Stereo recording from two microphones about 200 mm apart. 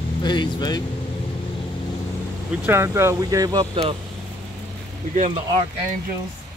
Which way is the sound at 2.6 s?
15° right (ahead or behind).